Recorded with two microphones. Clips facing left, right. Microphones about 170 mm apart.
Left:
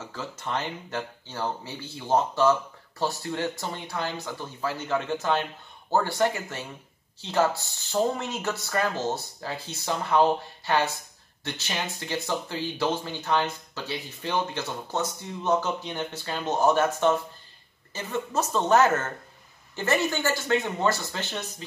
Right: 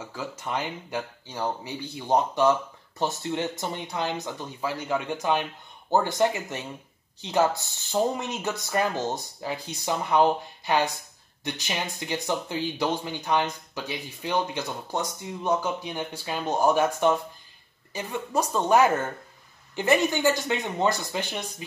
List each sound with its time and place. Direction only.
0.1 s speech: 10° right (ahead or behind)